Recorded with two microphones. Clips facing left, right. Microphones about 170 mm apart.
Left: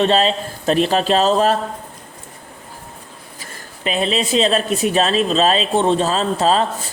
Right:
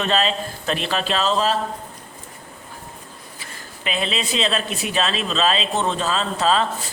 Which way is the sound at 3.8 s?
35° left (ahead or behind).